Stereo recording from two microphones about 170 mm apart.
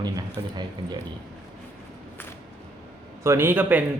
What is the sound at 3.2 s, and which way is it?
Speech, 15° right (ahead or behind).